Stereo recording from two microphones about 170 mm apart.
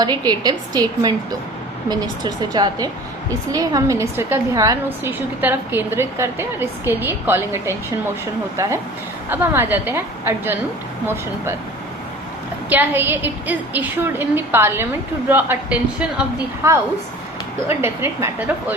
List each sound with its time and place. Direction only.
0.0 s a woman's voice: 25° right (ahead or behind)
9.3 s a woman's voice: 15° right (ahead or behind)
12.6 s a woman's voice: 10° right (ahead or behind)